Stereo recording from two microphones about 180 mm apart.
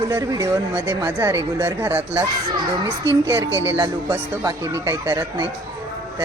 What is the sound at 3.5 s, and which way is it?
Music, 90° right.